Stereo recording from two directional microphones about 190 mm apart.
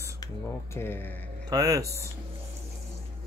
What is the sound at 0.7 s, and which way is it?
Speech, 10° left (ahead or behind).